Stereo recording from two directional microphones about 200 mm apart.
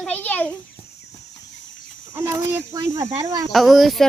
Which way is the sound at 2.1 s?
15° right (ahead or behind).